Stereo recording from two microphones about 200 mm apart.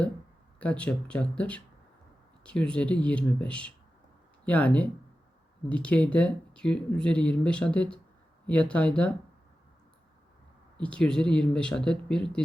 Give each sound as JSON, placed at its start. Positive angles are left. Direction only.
{"t": 0.6, "sound": "speech", "side_deg": 5}
{"t": 10.8, "sound": "speech", "side_deg": 5}